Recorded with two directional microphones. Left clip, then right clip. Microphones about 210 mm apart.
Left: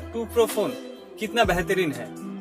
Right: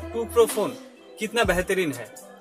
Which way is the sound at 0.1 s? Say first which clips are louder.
Right 2 dB; 5° right (ahead or behind).